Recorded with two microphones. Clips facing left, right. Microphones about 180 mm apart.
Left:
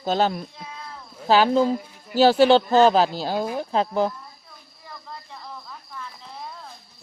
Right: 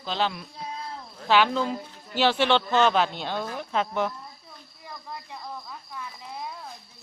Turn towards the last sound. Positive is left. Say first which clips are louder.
# right 1 dB
turn(degrees=-15)  # may be behind; listen again after turning